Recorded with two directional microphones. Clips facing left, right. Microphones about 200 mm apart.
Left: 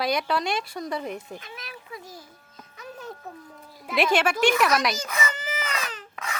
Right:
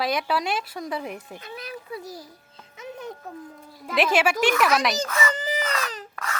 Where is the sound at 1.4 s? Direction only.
35° right (ahead or behind).